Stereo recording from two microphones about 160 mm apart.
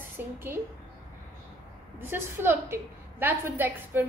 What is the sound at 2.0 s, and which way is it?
A woman's voice, 15° right (ahead or behind).